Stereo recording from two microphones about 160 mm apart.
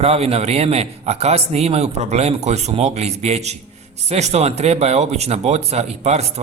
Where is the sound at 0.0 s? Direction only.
40° right (ahead or behind).